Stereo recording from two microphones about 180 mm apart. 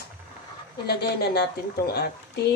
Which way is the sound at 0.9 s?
60° left (ahead or behind).